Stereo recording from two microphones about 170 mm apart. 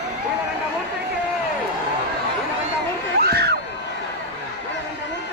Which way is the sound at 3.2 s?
70° right (ahead or behind).